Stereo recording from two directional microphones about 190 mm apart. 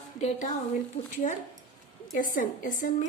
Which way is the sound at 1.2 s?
40° left (ahead or behind).